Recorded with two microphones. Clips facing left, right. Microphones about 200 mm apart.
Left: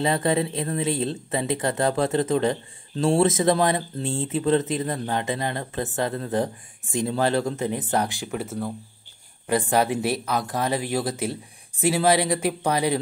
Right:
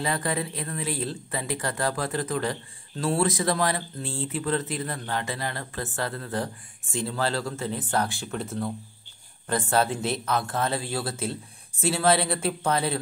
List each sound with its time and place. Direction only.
0.0 s speech: 25° left (ahead or behind)